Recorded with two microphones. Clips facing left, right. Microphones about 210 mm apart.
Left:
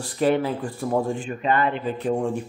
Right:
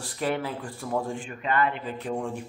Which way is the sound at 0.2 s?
25° left (ahead or behind).